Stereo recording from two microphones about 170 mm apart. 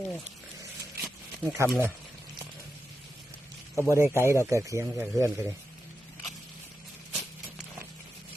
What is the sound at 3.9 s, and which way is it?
A man's voice, 15° right (ahead or behind).